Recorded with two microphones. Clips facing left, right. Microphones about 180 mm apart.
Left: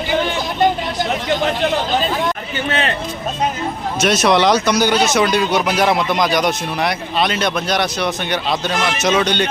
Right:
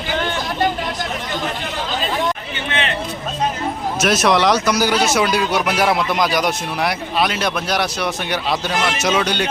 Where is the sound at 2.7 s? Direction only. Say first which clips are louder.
Left 3 dB; 40° left (ahead or behind).